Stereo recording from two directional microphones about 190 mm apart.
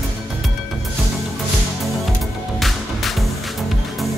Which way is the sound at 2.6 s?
Centre (ahead or behind).